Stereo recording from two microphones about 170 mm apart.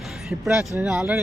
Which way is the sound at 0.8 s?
5° right (ahead or behind).